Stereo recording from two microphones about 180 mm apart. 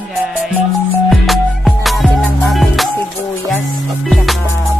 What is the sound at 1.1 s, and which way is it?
Music, centre (ahead or behind).